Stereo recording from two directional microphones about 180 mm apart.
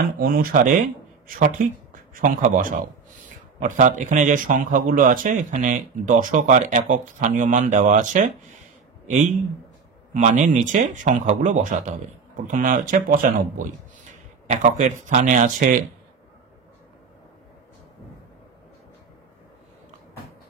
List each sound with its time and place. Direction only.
0.2 s speech: 55° right (ahead or behind)